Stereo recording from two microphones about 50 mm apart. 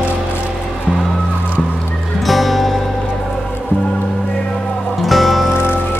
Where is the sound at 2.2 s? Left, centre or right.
Centre.